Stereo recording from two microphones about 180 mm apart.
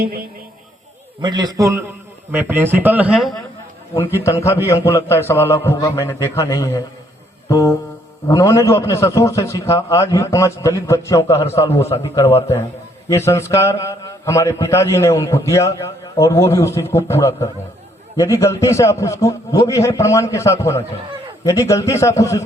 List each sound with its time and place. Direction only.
1.2 s a man's voice: 20° right (ahead or behind); by 3.3 s centre (ahead or behind)
4.2 s a man's voice: 15° left (ahead or behind)
7.4 s music: 20° left (ahead or behind)
8.3 s a man's voice: 15° left (ahead or behind)